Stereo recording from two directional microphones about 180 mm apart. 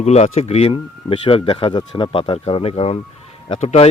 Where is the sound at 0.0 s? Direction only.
35° left (ahead or behind).